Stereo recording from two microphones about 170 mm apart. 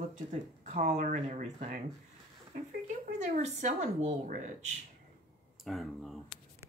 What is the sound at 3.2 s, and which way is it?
Speech, 45° right (ahead or behind).